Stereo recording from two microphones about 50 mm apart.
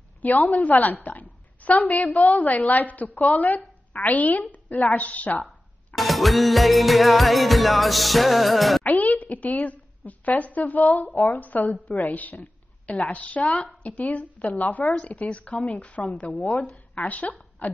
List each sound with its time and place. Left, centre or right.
0.2 s a woman's voice: left
4.9 s a sound: left
5.9 s music: centre
8.8 s a woman's voice: left